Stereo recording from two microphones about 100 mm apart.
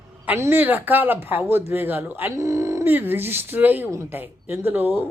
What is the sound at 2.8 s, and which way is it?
Speech, 20° right (ahead or behind).